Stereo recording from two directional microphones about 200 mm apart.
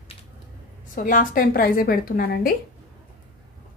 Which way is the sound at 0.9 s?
40° left (ahead or behind).